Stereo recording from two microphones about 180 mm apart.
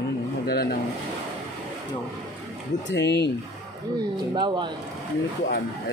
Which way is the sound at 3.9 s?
25° right (ahead or behind).